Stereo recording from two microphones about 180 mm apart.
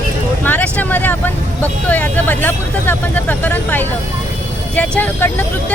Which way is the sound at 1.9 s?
10° left (ahead or behind).